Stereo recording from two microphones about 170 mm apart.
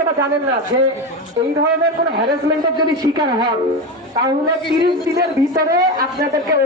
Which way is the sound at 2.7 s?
25° right (ahead or behind).